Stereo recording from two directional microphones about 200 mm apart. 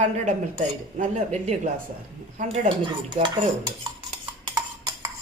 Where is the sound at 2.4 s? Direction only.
25° right (ahead or behind).